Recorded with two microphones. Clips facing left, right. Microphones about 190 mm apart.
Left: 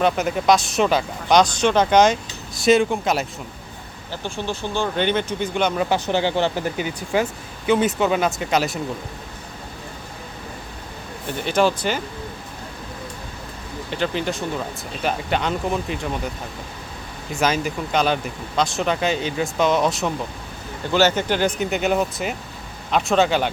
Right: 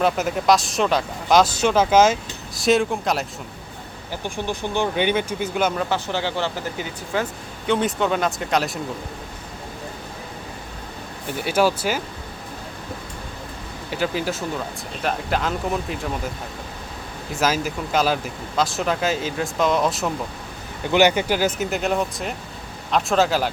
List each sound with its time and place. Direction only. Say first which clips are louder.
0.0 s speech: left 1 dB; centre (ahead or behind)
4.1 s speech: even; 15° right (ahead or behind)
5.7 s speech: left 3 dB; 10° left (ahead or behind)
7.7 s speech: left 2 dB; 5° left (ahead or behind)
11.3 s speech: even; 5° right (ahead or behind)
13.9 s speech: even; 5° right (ahead or behind)
17.4 s speech: left 1 dB; 5° right (ahead or behind)
20.9 s speech: right 1 dB; 15° right (ahead or behind)